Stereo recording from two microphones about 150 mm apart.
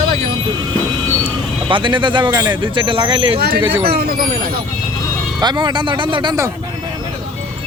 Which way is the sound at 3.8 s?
90° right.